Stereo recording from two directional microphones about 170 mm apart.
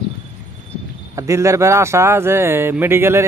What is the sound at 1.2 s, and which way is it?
A man's voice, 15° right (ahead or behind).